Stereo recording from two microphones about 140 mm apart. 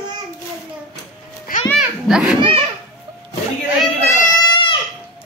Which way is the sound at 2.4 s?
40° right (ahead or behind).